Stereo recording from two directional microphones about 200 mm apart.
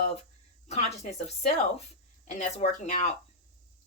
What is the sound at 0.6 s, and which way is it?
Speech, 35° left (ahead or behind).